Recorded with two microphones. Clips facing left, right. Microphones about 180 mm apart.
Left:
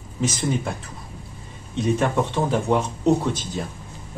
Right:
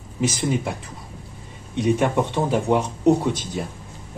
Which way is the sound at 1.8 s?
15° right (ahead or behind).